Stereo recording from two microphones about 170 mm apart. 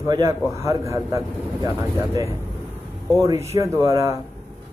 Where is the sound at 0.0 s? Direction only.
20° right (ahead or behind).